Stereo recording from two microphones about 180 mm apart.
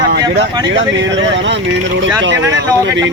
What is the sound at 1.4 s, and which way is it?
Speech, 85° right.